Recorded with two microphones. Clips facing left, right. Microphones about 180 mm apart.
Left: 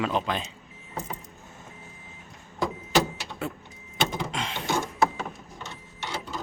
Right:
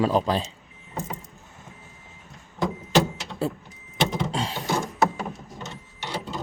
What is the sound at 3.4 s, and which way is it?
Speech, 35° right (ahead or behind).